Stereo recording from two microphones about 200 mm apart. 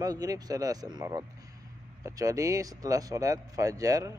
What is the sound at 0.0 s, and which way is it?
Speech, 20° right (ahead or behind).